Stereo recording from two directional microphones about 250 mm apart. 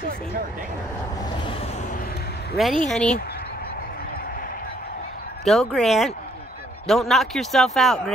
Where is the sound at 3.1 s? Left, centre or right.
Left.